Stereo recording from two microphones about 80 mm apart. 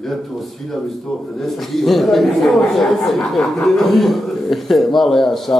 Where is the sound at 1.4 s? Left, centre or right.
Centre.